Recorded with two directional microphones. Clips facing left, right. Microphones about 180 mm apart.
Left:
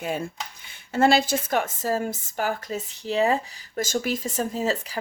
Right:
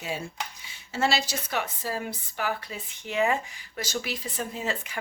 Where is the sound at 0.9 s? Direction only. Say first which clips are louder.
Left 7 dB; 55° left (ahead or behind).